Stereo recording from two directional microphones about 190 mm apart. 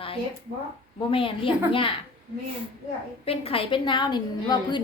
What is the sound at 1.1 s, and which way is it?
Speech, 30° left (ahead or behind).